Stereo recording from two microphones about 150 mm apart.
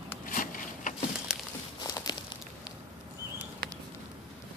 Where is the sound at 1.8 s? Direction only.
25° left (ahead or behind).